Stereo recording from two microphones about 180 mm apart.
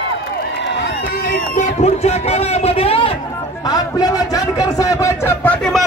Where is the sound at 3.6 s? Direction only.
20° left (ahead or behind).